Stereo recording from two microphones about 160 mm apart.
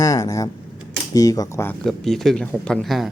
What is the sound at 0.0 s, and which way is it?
Speech, 20° left (ahead or behind).